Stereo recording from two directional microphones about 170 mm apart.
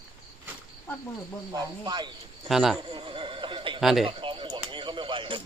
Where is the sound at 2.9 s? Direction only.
30° right (ahead or behind).